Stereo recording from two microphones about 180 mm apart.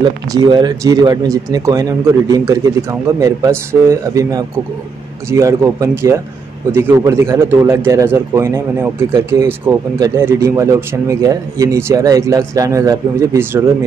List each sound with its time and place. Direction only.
0.0 s speech: 25° right (ahead or behind)